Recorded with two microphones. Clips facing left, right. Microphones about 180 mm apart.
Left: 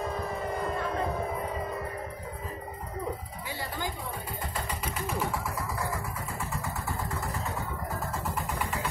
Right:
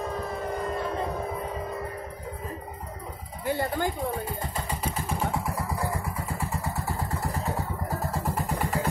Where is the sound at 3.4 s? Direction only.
50° right (ahead or behind).